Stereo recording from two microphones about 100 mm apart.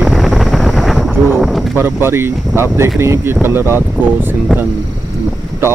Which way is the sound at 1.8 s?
25° right (ahead or behind).